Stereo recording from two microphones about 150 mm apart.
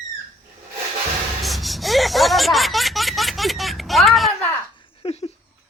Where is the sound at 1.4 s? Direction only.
Centre (ahead or behind).